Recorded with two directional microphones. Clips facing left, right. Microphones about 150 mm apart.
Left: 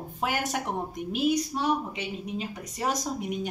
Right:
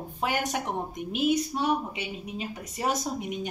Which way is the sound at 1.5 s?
5° right (ahead or behind).